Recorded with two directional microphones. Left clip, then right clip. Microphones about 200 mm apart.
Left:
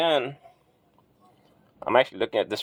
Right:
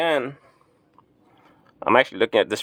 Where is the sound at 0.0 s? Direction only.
15° right (ahead or behind).